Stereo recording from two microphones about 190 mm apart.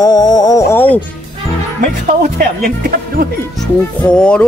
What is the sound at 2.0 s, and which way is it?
Speech, 50° right (ahead or behind).